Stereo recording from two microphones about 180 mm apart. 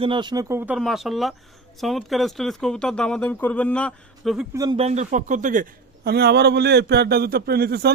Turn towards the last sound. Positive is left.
turn(degrees=-60)  # may be behind; listen again after turning